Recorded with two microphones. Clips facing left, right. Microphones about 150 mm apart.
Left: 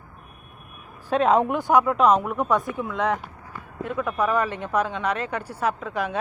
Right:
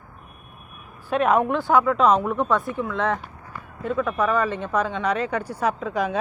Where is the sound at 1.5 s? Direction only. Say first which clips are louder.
Even; 15° left (ahead or behind).